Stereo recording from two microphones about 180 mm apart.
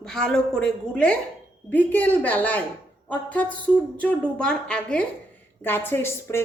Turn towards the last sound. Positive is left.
turn(degrees=15)  # may be behind; listen again after turning